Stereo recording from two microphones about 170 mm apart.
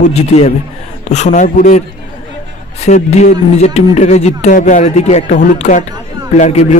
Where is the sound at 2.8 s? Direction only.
40° left (ahead or behind).